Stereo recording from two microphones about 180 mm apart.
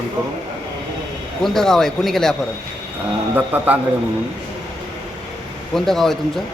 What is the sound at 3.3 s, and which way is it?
Speech, 10° right (ahead or behind).